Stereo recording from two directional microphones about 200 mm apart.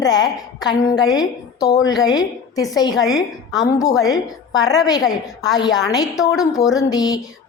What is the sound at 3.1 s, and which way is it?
Speech, centre (ahead or behind).